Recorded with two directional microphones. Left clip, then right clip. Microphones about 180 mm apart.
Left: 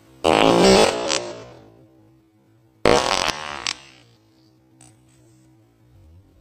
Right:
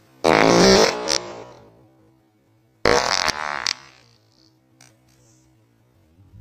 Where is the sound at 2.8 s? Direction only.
20° right (ahead or behind).